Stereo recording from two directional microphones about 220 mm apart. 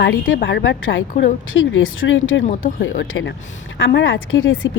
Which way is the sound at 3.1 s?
60° left (ahead or behind).